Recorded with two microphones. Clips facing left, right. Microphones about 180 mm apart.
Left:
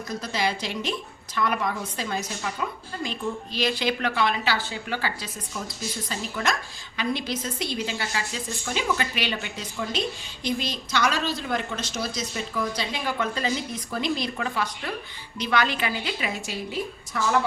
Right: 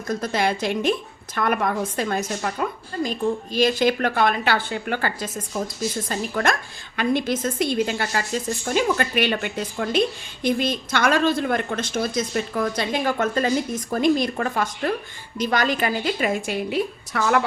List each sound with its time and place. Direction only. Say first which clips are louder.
0.1 s a woman's voice: right 5 dB; 50° right (ahead or behind); by 17.4 s 70° right (ahead or behind)